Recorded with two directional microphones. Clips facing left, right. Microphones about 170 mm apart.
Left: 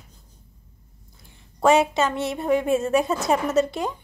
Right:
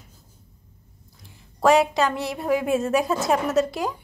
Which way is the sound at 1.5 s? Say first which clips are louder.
Even; centre (ahead or behind).